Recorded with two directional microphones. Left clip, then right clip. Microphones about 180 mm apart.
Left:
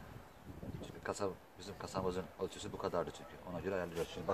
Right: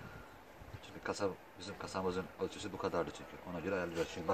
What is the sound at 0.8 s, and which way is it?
Speech, 30° left (ahead or behind).